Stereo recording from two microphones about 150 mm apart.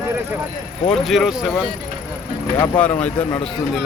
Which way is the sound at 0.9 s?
Centre (ahead or behind).